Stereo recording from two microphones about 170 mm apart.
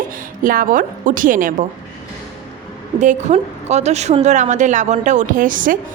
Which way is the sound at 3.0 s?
45° right (ahead or behind).